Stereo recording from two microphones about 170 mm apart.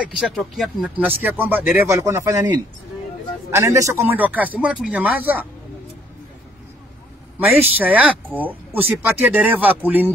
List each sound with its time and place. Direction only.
0.0 s speech: centre (ahead or behind)
7.3 s speech: 10° right (ahead or behind)